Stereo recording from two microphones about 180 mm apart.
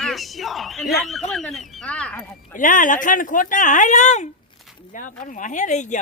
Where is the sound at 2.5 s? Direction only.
45° left (ahead or behind).